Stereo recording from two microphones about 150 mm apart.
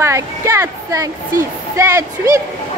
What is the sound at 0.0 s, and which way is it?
A child's voice, 20° right (ahead or behind).